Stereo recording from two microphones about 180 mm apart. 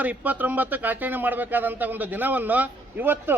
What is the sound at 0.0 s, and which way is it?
A man's voice, 10° right (ahead or behind).